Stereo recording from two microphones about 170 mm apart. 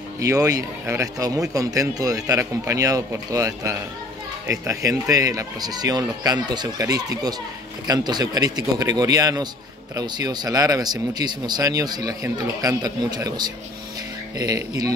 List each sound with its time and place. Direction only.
0.2 s speech: 20° right (ahead or behind)